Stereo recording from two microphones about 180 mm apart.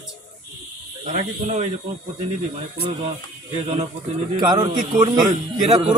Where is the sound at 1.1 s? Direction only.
40° right (ahead or behind).